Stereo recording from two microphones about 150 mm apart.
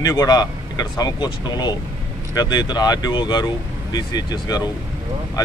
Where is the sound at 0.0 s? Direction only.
25° left (ahead or behind).